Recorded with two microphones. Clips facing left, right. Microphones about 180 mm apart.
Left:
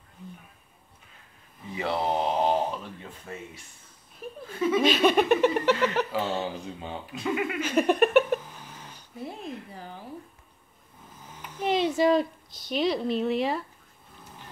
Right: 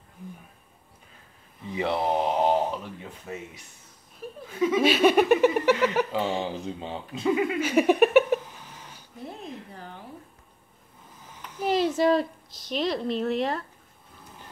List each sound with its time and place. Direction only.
1.8 s speech: 20° right (ahead or behind)
4.5 s speech: 10° right (ahead or behind)
6.8 s speech: 25° right (ahead or behind); by 8.4 s 10° right (ahead or behind)
11.6 s a woman's voice: centre (ahead or behind)